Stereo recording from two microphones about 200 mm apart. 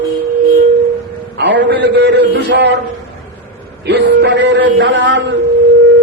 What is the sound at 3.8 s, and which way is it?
A man's voice, 60° right (ahead or behind).